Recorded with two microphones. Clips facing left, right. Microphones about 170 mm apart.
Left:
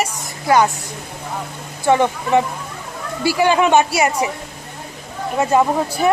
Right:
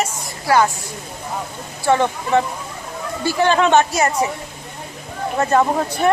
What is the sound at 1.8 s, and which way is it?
Speech, 15° left (ahead or behind).